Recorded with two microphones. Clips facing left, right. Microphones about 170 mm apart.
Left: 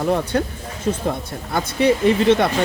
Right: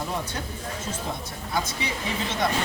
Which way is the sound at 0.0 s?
65° left (ahead or behind).